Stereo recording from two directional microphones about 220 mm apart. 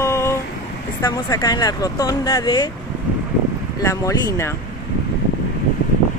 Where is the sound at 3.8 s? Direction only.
15° left (ahead or behind).